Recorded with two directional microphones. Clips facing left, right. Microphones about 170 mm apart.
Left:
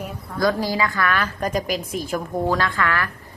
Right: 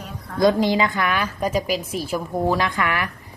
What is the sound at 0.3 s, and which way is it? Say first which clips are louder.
A woman's voice: right 4 dB; 20° right (ahead or behind).